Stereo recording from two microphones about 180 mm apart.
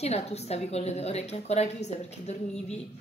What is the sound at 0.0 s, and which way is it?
A woman's voice, 35° left (ahead or behind).